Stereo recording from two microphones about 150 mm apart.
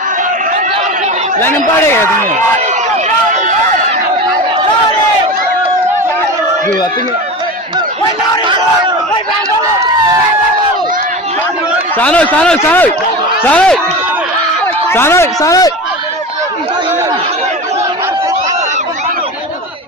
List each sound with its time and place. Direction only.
1.4 s a man's voice: 15° left (ahead or behind)
11.9 s a man's voice: 10° left (ahead or behind)
14.8 s a man's voice: 15° left (ahead or behind)